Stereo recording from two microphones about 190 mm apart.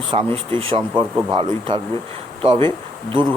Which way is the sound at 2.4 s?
25° right (ahead or behind).